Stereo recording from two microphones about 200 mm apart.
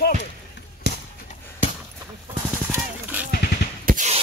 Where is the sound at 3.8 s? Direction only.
40° right (ahead or behind).